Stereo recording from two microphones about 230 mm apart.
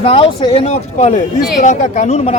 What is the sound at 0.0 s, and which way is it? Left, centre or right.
Speech, left.